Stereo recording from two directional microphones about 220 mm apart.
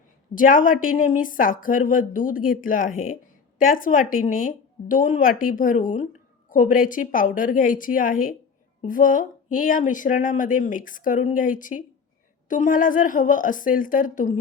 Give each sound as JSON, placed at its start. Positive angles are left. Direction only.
{"t": 0.3, "sound": "speech", "side_deg": 40}